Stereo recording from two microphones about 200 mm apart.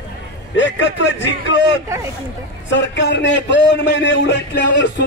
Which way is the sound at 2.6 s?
65° left (ahead or behind).